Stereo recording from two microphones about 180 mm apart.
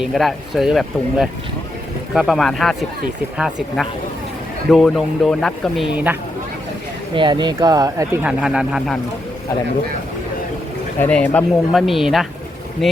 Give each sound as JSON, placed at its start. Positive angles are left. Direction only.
{"t": 0.0, "sound": "speech", "side_deg": 0}
{"t": 7.1, "sound": "speech", "side_deg": -25}
{"t": 11.0, "sound": "speech", "side_deg": 10}